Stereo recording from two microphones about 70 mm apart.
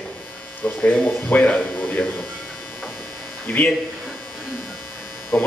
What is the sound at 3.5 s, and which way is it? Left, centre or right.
Speech, left.